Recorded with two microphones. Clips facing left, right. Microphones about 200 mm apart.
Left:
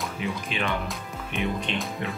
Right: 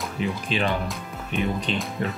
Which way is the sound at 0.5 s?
35° right (ahead or behind).